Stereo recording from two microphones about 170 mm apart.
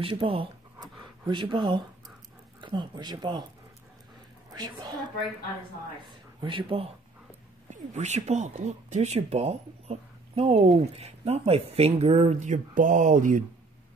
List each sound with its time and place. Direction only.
0.0 s speech: 30° right (ahead or behind)
4.5 s a woman's voice: 25° right (ahead or behind)
6.0 s speech: 30° right (ahead or behind)
7.7 s speech: 40° right (ahead or behind)